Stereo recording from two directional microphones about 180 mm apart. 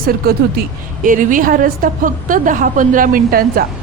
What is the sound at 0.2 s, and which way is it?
A woman's voice, 55° right (ahead or behind).